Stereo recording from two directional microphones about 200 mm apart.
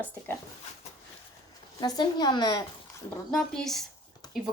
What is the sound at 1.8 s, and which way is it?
Speech, 20° left (ahead or behind).